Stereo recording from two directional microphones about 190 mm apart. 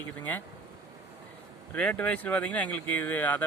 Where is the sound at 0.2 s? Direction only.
10° left (ahead or behind).